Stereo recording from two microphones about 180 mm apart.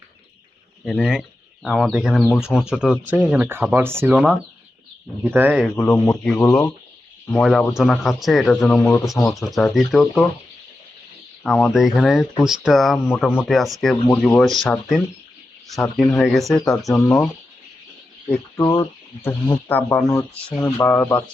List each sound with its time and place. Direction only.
0.9 s speech: centre (ahead or behind)
5.7 s speech: 10° left (ahead or behind)
11.4 s speech: centre (ahead or behind)
16.6 s speech: 20° left (ahead or behind)
18.5 s speech: 20° left (ahead or behind)